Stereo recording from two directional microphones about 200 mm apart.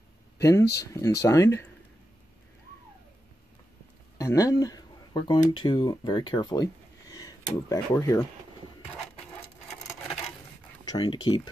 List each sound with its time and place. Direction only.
0.4 s speech: 15° left (ahead or behind)
4.2 s speech: 15° left (ahead or behind)
10.9 s speech: 20° left (ahead or behind)